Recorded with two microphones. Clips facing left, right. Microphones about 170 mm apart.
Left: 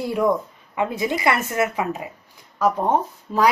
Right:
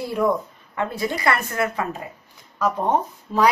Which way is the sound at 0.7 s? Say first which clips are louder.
Left 2 dB; 20° left (ahead or behind).